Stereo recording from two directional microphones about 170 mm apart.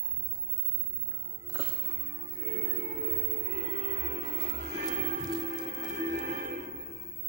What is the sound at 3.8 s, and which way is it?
Music, 45° right (ahead or behind).